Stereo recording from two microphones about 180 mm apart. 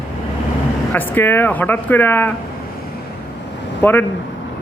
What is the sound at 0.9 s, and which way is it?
Speech, 10° left (ahead or behind).